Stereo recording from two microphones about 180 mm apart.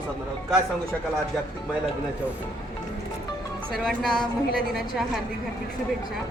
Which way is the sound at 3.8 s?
5° left (ahead or behind).